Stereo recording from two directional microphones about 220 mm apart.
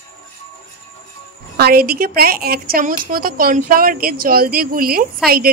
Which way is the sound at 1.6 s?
45° right (ahead or behind).